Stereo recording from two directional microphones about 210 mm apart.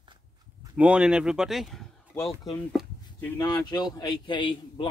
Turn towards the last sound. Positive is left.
turn(degrees=20)  # may be behind; listen again after turning